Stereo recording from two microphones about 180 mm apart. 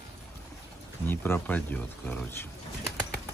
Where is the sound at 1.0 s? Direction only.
10° left (ahead or behind).